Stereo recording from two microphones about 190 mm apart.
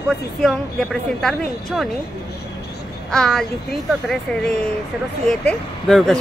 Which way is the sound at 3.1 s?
5° left (ahead or behind).